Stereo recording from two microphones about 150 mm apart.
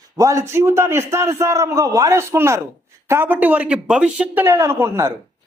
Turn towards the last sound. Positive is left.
turn(degrees=-15)  # may be behind; listen again after turning